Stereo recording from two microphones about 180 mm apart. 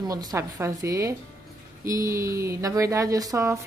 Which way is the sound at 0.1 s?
20° right (ahead or behind).